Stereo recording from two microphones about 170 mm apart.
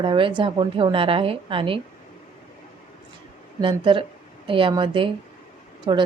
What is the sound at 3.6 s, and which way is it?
A woman's voice, 30° right (ahead or behind).